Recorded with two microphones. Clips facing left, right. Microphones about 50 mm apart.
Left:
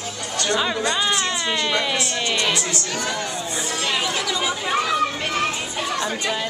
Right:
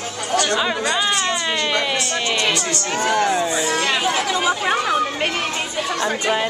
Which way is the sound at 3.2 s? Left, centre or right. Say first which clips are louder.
Right 9 dB; right.